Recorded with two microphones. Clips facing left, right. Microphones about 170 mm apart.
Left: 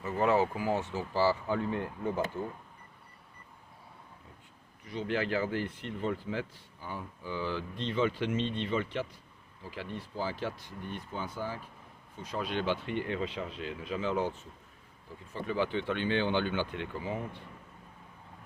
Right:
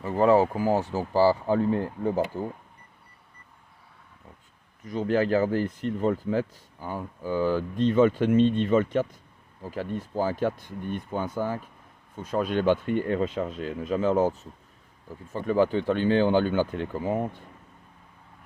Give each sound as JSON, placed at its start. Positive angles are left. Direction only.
{"t": 0.0, "sound": "speech", "side_deg": -35}
{"t": 4.9, "sound": "speech", "side_deg": -45}